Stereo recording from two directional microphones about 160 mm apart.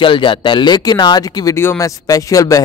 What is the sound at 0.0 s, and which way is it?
Speech, 30° left (ahead or behind).